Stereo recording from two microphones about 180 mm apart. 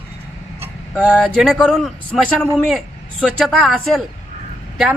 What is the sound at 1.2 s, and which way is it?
Speech, centre (ahead or behind).